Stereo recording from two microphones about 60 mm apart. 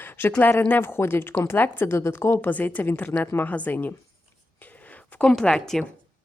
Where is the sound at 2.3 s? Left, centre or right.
Left.